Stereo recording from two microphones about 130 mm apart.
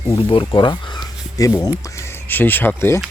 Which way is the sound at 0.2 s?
40° left (ahead or behind).